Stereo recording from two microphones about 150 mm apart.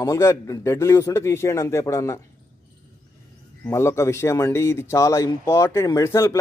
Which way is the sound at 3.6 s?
20° left (ahead or behind).